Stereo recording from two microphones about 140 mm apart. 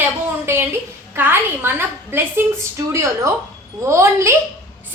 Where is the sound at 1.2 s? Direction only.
15° right (ahead or behind).